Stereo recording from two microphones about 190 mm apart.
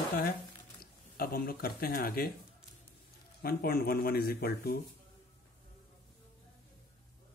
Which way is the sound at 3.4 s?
55° left (ahead or behind).